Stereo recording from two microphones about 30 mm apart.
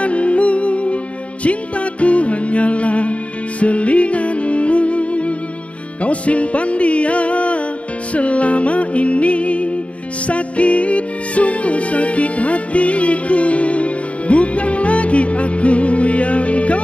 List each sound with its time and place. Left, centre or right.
0.0 s music: left